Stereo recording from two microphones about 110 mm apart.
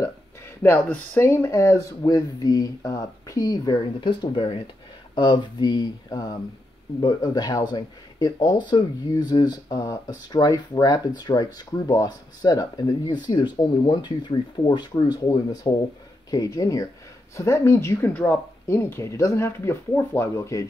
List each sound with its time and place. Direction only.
0.6 s speech: 15° left (ahead or behind)